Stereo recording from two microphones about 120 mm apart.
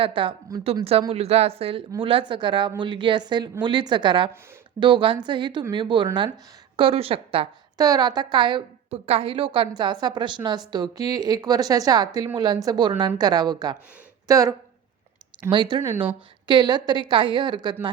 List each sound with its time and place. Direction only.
0.0 s speech: 45° right (ahead or behind)
1.1 s a woman's voice: 60° right (ahead or behind)
7.8 s a woman's voice: 35° right (ahead or behind)
8.9 s a woman's voice: 55° right (ahead or behind); by 14.5 s 30° right (ahead or behind)
15.4 s a woman's voice: 40° right (ahead or behind)